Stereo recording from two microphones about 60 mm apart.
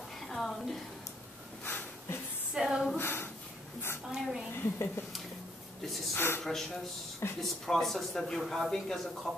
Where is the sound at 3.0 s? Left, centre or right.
Left.